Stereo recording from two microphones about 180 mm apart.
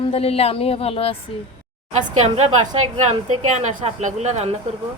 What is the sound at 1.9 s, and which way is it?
A woman's voice, 35° right (ahead or behind).